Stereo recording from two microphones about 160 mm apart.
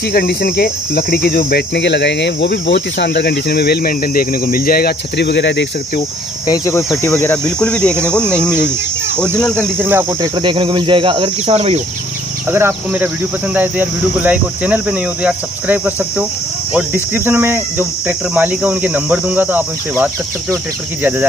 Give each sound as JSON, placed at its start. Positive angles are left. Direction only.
{"t": 0.1, "sound": "cricket", "side_deg": 75}
{"t": 6.4, "sound": "speech", "side_deg": 20}
{"t": 7.4, "sound": "cricket", "side_deg": 5}
{"t": 9.8, "sound": "cricket", "side_deg": -10}
{"t": 10.2, "sound": "speech", "side_deg": -30}
{"t": 12.4, "sound": "cricket", "side_deg": -15}